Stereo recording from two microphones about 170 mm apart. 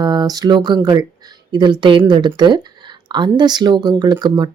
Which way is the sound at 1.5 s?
25° right (ahead or behind).